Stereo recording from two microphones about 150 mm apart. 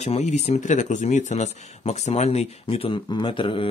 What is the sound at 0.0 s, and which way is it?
Speech, 50° left (ahead or behind).